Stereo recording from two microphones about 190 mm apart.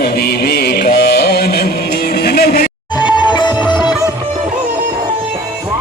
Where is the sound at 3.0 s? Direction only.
25° left (ahead or behind).